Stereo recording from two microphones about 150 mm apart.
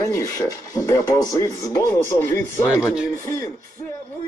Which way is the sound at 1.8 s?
15° left (ahead or behind).